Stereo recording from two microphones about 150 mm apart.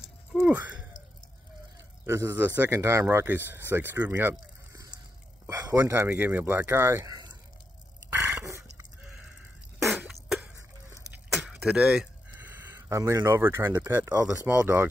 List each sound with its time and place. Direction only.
0.3 s speech: 5° right (ahead or behind)
2.0 s speech: 20° right (ahead or behind)
5.5 s a sound: 25° right (ahead or behind)
5.8 s speech: 15° right (ahead or behind)
8.1 s dog: 10° right (ahead or behind)
9.0 s a sound: 5° right (ahead or behind)
9.8 s cough: 5° right (ahead or behind)
10.2 s a sound: 5° right (ahead or behind)
12.7 s speech: 15° right (ahead or behind)